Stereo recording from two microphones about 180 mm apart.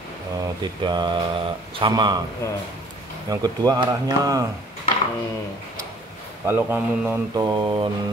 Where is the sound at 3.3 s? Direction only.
20° right (ahead or behind).